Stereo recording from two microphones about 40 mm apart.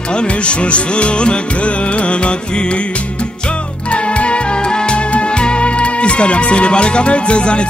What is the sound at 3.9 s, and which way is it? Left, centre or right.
Music, left.